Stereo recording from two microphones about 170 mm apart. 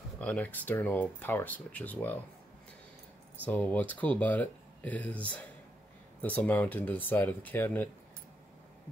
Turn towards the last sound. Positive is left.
turn(degrees=10)  # may be behind; listen again after turning